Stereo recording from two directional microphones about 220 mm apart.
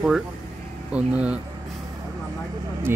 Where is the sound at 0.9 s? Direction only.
5° right (ahead or behind).